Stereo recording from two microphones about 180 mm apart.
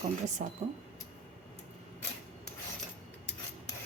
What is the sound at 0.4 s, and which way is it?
Speech, 40° right (ahead or behind).